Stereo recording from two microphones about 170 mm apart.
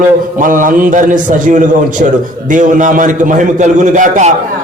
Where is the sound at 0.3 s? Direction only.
50° right (ahead or behind).